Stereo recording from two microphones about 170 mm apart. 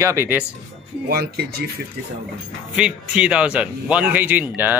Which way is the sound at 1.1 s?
65° right (ahead or behind).